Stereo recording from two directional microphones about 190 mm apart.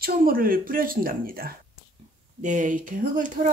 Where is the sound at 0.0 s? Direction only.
50° right (ahead or behind).